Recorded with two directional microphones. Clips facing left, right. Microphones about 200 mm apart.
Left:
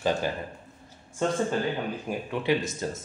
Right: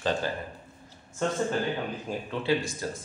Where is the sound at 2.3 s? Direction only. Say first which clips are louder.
Left 1 dB; 15° left (ahead or behind).